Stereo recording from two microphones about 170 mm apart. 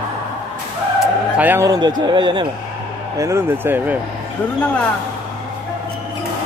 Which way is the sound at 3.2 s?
15° right (ahead or behind).